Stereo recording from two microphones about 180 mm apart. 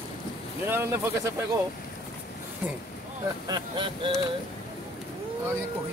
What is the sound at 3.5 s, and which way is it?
Speech, 25° right (ahead or behind).